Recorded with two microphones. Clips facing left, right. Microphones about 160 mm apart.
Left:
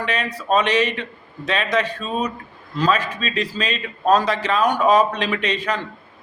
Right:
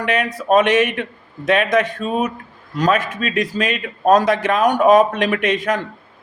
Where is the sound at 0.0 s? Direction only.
50° right (ahead or behind).